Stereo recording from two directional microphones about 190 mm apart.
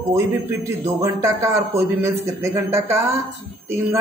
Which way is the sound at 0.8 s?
15° right (ahead or behind).